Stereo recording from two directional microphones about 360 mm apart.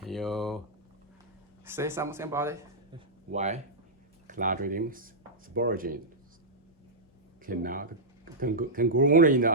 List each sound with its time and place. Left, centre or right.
0.0 s a sound: centre
1.6 s speech: centre
3.3 s speech: centre
7.4 s speech: right